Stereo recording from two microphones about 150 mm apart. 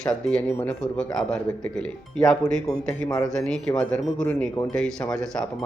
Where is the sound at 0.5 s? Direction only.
5° left (ahead or behind).